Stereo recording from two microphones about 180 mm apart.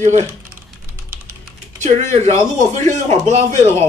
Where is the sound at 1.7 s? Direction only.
40° right (ahead or behind).